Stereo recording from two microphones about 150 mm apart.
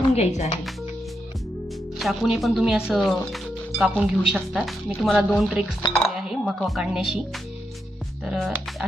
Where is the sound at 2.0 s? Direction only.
Centre (ahead or behind).